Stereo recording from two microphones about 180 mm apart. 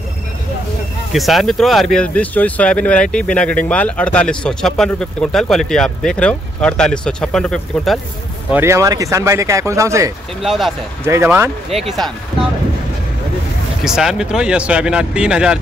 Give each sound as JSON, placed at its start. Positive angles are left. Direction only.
{"t": 1.1, "sound": "speech", "side_deg": 0}
{"t": 8.5, "sound": "speech", "side_deg": -15}
{"t": 10.4, "sound": "speech", "side_deg": 0}
{"t": 11.1, "sound": "speech", "side_deg": -15}
{"t": 11.7, "sound": "speech", "side_deg": 0}
{"t": 13.8, "sound": "speech", "side_deg": -5}